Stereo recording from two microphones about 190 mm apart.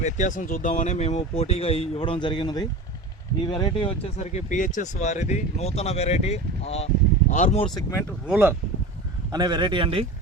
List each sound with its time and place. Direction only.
0.0 s speech: 40° left (ahead or behind)
7.6 s speech: 20° left (ahead or behind)
8.3 s speech: 10° right (ahead or behind)
9.3 s speech: 20° right (ahead or behind)